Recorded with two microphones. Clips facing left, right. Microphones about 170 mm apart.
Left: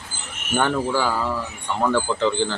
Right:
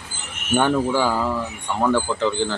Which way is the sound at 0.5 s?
10° right (ahead or behind).